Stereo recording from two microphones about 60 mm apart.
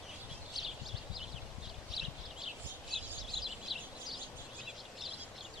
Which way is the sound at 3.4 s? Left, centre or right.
Centre.